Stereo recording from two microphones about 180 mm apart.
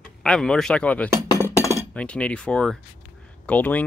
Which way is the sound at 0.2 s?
5° left (ahead or behind).